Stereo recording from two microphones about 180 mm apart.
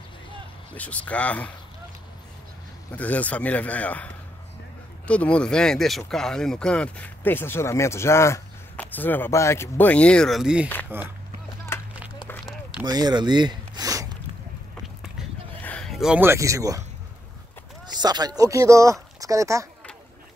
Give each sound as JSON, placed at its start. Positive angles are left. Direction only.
{"t": 0.7, "sound": "speech", "side_deg": 10}
{"t": 2.9, "sound": "speech", "side_deg": 10}
{"t": 12.8, "sound": "speech", "side_deg": -20}
{"t": 15.6, "sound": "speech", "side_deg": 5}
{"t": 17.8, "sound": "speech", "side_deg": -25}